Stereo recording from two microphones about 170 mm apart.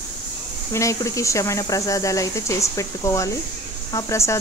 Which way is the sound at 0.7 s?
20° left (ahead or behind).